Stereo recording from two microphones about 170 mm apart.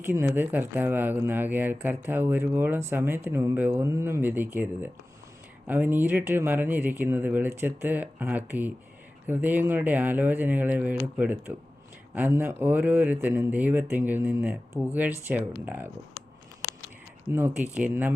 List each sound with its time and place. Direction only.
0.0 s speech: 10° right (ahead or behind)
17.3 s speech: 10° right (ahead or behind)